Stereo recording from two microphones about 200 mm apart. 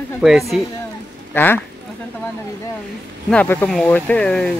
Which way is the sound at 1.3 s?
10° left (ahead or behind).